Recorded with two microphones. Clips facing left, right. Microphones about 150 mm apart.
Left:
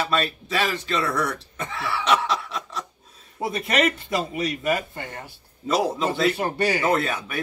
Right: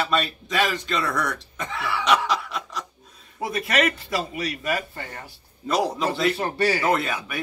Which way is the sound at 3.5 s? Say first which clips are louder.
Even; 25° left (ahead or behind).